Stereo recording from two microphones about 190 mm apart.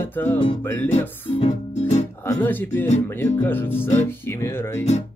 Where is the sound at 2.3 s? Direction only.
10° left (ahead or behind).